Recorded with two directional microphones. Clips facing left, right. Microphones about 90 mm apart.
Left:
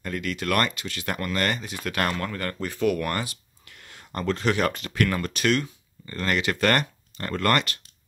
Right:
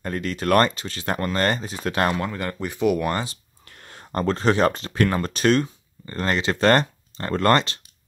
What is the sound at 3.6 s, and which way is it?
Speech, 40° right (ahead or behind).